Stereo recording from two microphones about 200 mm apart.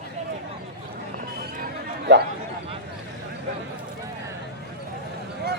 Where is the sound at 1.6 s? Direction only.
60° right (ahead or behind).